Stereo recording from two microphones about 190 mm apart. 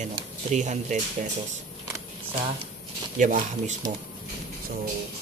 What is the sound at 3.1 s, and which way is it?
Speech, 40° right (ahead or behind).